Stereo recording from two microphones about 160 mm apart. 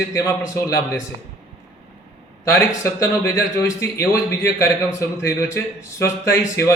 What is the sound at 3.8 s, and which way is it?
A man's voice, 20° left (ahead or behind).